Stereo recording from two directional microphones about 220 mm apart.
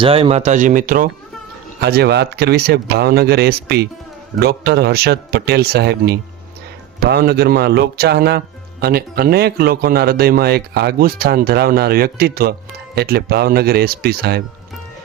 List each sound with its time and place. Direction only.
0.0 s speech: 25° right (ahead or behind); by 14.4 s 45° right (ahead or behind)